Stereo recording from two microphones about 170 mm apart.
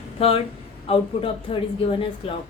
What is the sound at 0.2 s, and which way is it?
A woman's voice, 35° left (ahead or behind).